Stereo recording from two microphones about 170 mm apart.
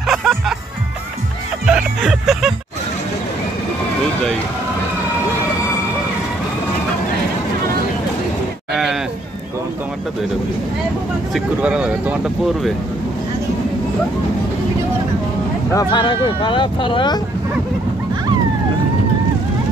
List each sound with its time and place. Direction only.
0.0 s music: centre (ahead or behind)
1.7 s music: 5° right (ahead or behind)
8.7 s a sound: centre (ahead or behind)
11.3 s speech: 5° right (ahead or behind)
15.7 s speech: 25° left (ahead or behind)